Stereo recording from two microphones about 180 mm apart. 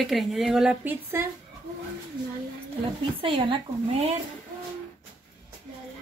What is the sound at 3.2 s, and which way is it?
Speech, 30° right (ahead or behind).